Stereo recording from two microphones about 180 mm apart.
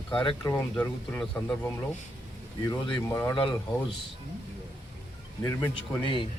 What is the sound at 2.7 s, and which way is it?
Speech, 25° left (ahead or behind).